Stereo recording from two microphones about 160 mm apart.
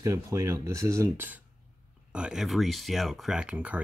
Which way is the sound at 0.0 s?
20° right (ahead or behind).